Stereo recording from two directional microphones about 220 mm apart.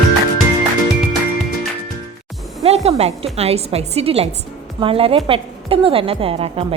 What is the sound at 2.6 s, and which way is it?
Music, 30° right (ahead or behind).